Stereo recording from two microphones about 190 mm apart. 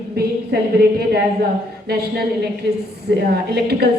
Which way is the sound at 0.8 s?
55° right (ahead or behind).